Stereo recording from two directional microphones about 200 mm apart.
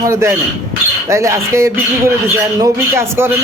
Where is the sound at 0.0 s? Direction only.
15° right (ahead or behind).